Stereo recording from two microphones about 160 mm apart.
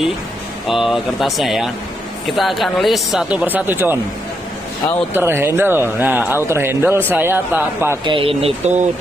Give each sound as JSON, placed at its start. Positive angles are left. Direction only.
{"t": 0.7, "sound": "speech", "side_deg": 0}
{"t": 5.1, "sound": "speech", "side_deg": -15}
{"t": 8.0, "sound": "speech", "side_deg": -35}